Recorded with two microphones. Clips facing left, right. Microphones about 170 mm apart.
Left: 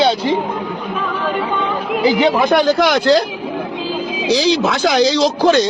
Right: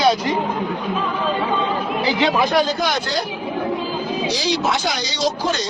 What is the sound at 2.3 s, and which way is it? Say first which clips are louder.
Speech: left 5 dB; 65° left (ahead or behind).